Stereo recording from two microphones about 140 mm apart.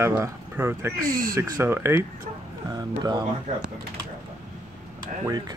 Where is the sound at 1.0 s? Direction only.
90° right.